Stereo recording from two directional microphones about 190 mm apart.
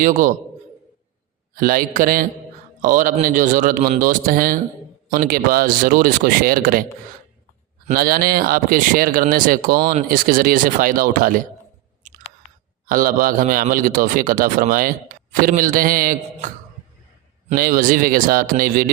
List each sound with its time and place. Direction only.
0.0 s speech: 40° right (ahead or behind)
1.5 s speech: 50° right (ahead or behind)
7.9 s speech: 50° right (ahead or behind)
12.9 s speech: 45° right (ahead or behind)
17.5 s speech: 50° right (ahead or behind)